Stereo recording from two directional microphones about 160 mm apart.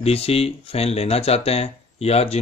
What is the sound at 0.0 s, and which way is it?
Speech, 40° left (ahead or behind).